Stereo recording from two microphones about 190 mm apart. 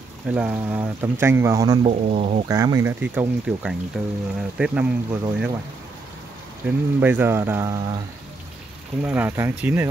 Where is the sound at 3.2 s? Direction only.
5° right (ahead or behind).